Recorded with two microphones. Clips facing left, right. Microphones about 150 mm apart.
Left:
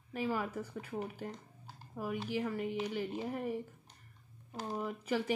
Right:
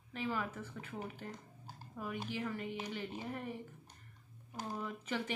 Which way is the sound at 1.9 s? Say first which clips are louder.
Left 4 dB; 10° left (ahead or behind).